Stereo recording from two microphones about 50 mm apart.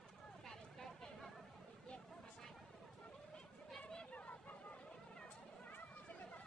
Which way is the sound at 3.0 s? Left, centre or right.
Left.